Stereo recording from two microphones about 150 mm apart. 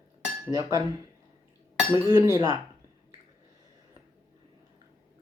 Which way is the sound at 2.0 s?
15° right (ahead or behind).